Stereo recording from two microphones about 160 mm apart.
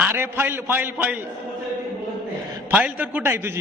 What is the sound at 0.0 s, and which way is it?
A man's voice, 15° right (ahead or behind).